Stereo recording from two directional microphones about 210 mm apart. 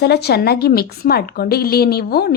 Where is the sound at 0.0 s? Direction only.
50° left (ahead or behind).